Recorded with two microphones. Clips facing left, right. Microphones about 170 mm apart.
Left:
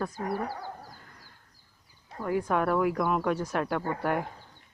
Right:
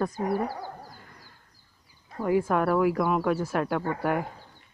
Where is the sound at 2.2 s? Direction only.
5° right (ahead or behind).